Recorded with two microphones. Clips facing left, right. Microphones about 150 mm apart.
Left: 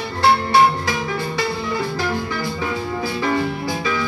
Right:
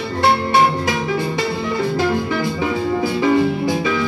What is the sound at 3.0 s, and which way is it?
Music, 20° right (ahead or behind).